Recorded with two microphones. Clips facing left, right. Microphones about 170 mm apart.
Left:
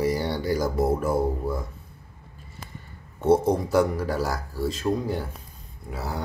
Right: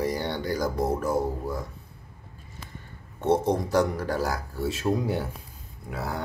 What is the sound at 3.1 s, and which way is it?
Speech, 10° left (ahead or behind).